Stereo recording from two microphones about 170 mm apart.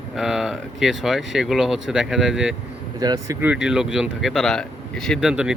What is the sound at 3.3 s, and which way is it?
Speech, 10° right (ahead or behind).